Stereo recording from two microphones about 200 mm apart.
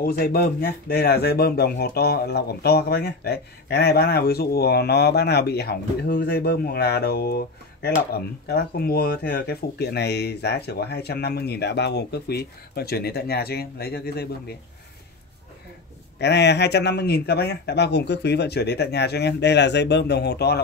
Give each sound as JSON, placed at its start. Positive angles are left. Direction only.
{"t": 0.0, "sound": "speech", "side_deg": 50}
{"t": 16.2, "sound": "speech", "side_deg": 55}